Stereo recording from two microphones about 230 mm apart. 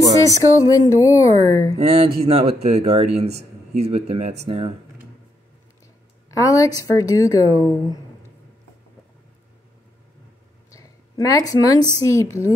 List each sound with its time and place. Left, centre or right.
0.2 s speech: centre
1.8 s speech: right
6.3 s speech: centre
10.7 s a sound: centre
12.0 s speech: centre